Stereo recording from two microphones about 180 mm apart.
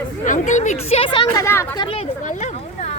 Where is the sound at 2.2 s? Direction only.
40° left (ahead or behind).